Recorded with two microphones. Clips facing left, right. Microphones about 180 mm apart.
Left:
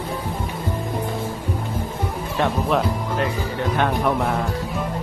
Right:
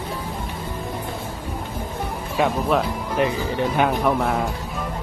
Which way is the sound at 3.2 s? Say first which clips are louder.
Right 6 dB; 20° right (ahead or behind).